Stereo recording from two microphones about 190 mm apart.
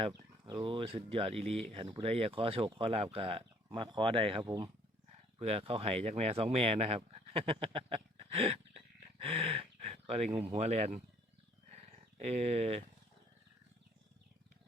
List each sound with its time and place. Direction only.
0.1 s speech: 20° right (ahead or behind)
12.1 s speech: 35° right (ahead or behind)